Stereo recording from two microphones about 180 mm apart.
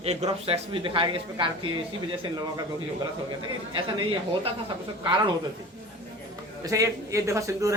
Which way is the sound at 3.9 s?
25° right (ahead or behind).